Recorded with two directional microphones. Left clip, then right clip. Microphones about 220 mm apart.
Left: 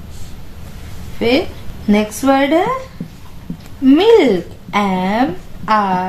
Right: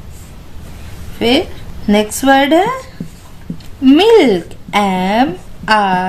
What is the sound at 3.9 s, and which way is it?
A woman's voice, 40° right (ahead or behind).